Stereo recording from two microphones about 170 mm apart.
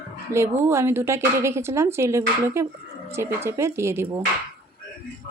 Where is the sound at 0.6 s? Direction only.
15° right (ahead or behind).